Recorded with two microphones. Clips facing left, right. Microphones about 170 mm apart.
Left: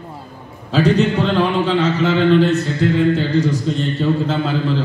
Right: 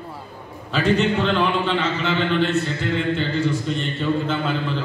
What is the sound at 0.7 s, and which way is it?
A man's voice, 40° left (ahead or behind).